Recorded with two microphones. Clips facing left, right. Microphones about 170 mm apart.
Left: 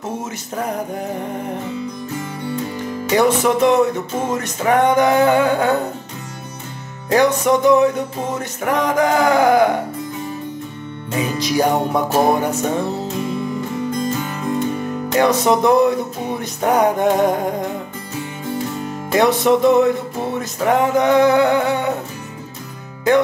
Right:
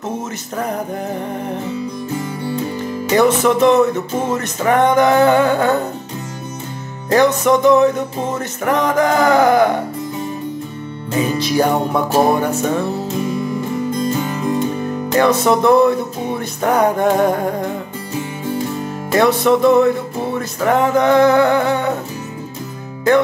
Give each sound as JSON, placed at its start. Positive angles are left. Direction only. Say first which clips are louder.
{"t": 3.1, "sound": "music", "louder": "right 2 dB", "side_deg": 10}
{"t": 7.1, "sound": "music", "louder": "right 2 dB", "side_deg": 10}
{"t": 11.3, "sound": "music", "louder": "even", "side_deg": 15}
{"t": 15.1, "sound": "music", "louder": "right 1 dB", "side_deg": 15}
{"t": 19.1, "sound": "music", "louder": "right 1 dB", "side_deg": 15}